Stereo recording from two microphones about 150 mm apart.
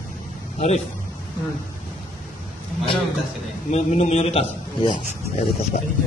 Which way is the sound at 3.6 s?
45° left (ahead or behind).